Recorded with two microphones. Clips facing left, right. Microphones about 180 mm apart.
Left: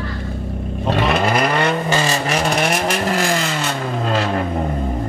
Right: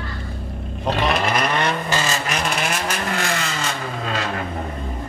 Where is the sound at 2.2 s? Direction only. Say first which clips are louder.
Left 5 dB; 35° left (ahead or behind).